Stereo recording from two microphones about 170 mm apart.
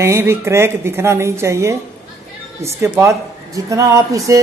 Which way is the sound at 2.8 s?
15° right (ahead or behind).